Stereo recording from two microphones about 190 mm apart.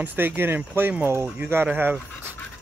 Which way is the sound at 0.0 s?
10° right (ahead or behind).